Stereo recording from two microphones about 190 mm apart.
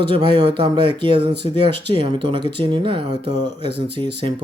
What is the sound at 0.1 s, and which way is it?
Speech, 25° right (ahead or behind).